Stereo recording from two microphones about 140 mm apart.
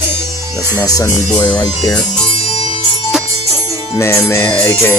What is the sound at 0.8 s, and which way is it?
Speech, 25° left (ahead or behind).